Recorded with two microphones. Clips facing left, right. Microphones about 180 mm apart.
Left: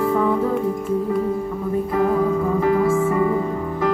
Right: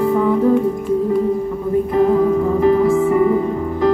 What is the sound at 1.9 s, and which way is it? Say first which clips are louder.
Music: right 5 dB; 20° right (ahead or behind).